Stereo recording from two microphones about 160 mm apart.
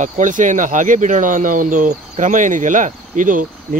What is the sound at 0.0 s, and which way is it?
Speech, 50° right (ahead or behind).